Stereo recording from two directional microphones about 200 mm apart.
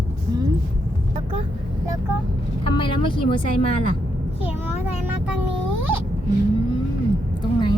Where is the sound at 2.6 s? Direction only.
25° left (ahead or behind).